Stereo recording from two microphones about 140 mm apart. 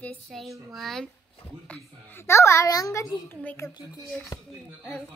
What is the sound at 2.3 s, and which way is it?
A child's voice, 20° left (ahead or behind).